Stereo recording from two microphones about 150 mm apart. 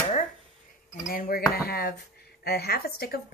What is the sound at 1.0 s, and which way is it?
Speech, 70° left (ahead or behind).